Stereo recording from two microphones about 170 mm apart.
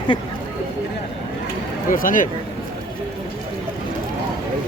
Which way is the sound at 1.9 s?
55° left (ahead or behind).